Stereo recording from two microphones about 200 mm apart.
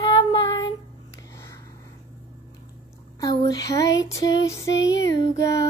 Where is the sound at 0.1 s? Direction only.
25° left (ahead or behind).